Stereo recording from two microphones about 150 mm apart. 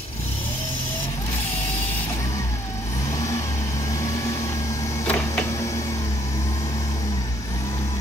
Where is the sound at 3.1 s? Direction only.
20° left (ahead or behind).